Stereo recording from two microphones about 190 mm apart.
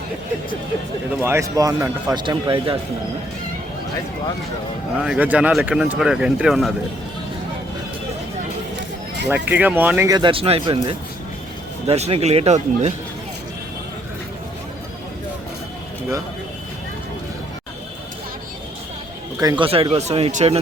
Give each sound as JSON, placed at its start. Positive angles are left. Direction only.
{"t": 1.1, "sound": "speech", "side_deg": -15}
{"t": 4.9, "sound": "speech", "side_deg": -5}
{"t": 9.5, "sound": "speech", "side_deg": -10}
{"t": 10.1, "sound": "speech", "side_deg": -25}
{"t": 19.4, "sound": "speech", "side_deg": -20}